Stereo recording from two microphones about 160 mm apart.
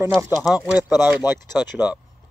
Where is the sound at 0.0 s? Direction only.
15° right (ahead or behind).